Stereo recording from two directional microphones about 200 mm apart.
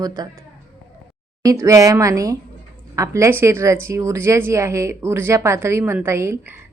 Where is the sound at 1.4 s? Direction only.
15° right (ahead or behind).